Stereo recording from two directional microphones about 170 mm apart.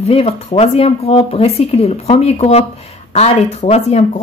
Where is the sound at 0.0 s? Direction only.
35° left (ahead or behind).